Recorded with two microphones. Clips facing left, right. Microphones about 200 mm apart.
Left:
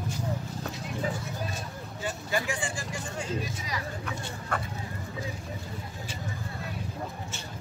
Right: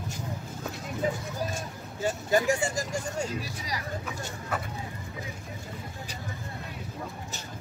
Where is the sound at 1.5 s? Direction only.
45° right (ahead or behind).